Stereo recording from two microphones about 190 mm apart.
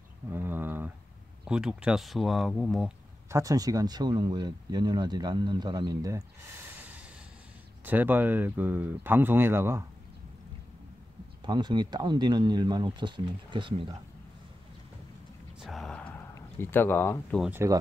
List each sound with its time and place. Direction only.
0.3 s a sound: 10° right (ahead or behind)
1.4 s speech: 5° right (ahead or behind)
3.3 s speech: 15° right (ahead or behind)
11.4 s speech: 25° right (ahead or behind)
15.6 s a sound: centre (ahead or behind)
17.4 s speech: 10° right (ahead or behind)